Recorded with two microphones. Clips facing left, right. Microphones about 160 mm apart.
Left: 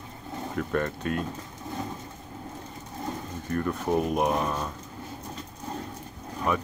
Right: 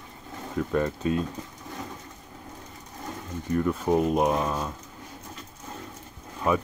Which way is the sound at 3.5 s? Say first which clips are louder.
Right 3 dB; 15° right (ahead or behind).